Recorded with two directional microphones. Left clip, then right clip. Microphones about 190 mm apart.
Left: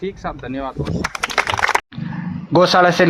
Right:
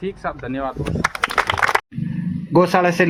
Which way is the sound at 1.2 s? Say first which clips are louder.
Left 1 dB; 55° left (ahead or behind).